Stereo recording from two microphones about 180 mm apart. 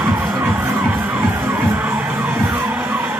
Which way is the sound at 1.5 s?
10° right (ahead or behind).